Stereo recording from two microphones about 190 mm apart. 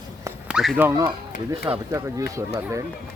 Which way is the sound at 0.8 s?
15° right (ahead or behind).